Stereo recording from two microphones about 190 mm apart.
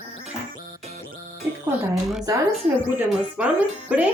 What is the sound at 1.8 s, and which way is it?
Speech, centre (ahead or behind).